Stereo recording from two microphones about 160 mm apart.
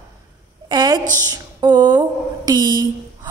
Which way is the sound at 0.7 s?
25° right (ahead or behind).